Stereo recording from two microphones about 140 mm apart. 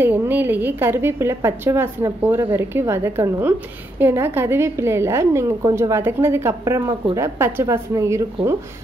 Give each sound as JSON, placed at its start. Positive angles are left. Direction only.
{"t": 0.0, "sound": "a woman's voice", "side_deg": -15}